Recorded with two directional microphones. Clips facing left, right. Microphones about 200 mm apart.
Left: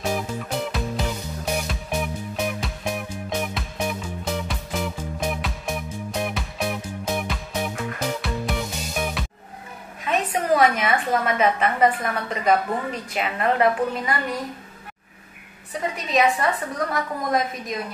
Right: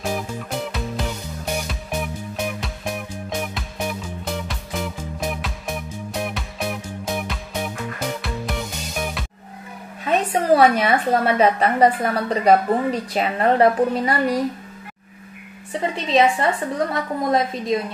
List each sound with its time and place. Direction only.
0.0 s music: centre (ahead or behind)
10.0 s a woman's voice: 35° right (ahead or behind)
15.7 s a woman's voice: 25° right (ahead or behind)